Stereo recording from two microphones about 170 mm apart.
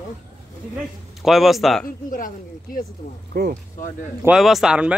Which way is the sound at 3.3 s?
60° right (ahead or behind).